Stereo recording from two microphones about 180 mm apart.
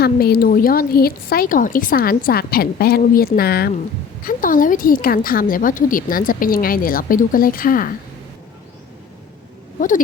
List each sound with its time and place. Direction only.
0.0 s speech: 60° left (ahead or behind)
4.2 s a woman's voice: 50° left (ahead or behind)